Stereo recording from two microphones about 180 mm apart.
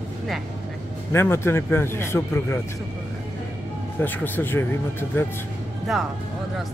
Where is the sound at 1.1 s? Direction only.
15° left (ahead or behind).